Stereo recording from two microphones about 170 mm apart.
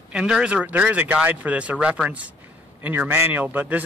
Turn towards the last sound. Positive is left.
turn(degrees=-10)  # may be behind; listen again after turning